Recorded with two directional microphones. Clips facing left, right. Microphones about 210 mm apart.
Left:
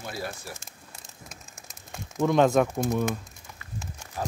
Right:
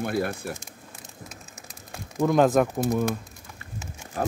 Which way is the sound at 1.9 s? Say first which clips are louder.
Right 1 dB; centre (ahead or behind).